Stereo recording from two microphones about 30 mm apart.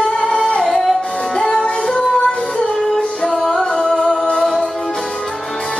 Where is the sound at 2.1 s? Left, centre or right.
Centre.